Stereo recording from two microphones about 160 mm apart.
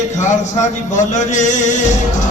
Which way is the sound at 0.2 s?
50° left (ahead or behind).